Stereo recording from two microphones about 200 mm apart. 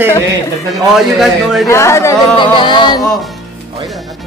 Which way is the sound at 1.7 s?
15° left (ahead or behind).